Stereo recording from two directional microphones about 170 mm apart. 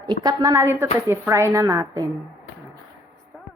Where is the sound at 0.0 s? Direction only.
25° right (ahead or behind).